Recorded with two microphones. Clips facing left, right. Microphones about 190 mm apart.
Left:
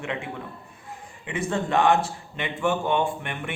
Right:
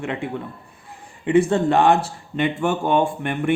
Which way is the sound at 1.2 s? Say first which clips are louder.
Right 10 dB; 35° right (ahead or behind).